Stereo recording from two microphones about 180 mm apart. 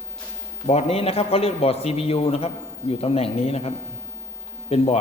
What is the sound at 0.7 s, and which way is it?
A man's voice, 35° left (ahead or behind).